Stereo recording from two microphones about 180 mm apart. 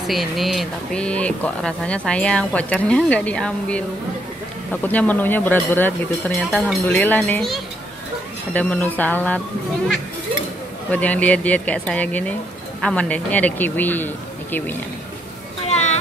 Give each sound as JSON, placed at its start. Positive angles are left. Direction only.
{"t": 0.0, "sound": "speech", "side_deg": 0}
{"t": 4.8, "sound": "speech", "side_deg": 10}
{"t": 6.5, "sound": "speech", "side_deg": 0}
{"t": 7.0, "sound": "speech", "side_deg": 10}
{"t": 10.9, "sound": "speech", "side_deg": 10}
{"t": 15.6, "sound": "a sound", "side_deg": 40}